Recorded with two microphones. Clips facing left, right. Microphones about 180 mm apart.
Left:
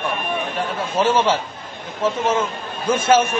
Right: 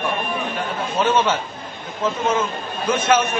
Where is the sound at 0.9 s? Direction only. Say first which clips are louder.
Left 1 dB; 30° left (ahead or behind).